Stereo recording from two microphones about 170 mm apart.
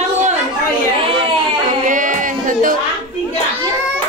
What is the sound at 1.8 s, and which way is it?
Music, 50° right (ahead or behind).